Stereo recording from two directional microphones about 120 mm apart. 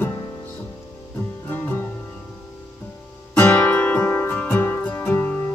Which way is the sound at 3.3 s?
15° left (ahead or behind).